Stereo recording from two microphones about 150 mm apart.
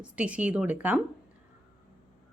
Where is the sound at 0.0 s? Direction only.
10° right (ahead or behind).